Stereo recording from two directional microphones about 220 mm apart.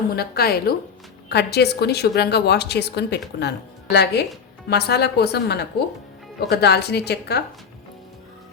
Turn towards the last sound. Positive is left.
turn(degrees=45)  # may be behind; listen again after turning